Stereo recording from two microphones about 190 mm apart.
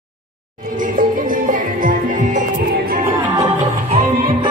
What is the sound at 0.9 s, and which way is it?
Music, 45° right (ahead or behind).